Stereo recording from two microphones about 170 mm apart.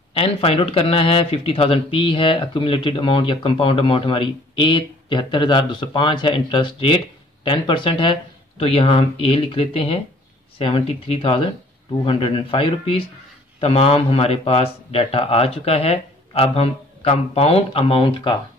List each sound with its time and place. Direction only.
0.1 s speech: 35° left (ahead or behind)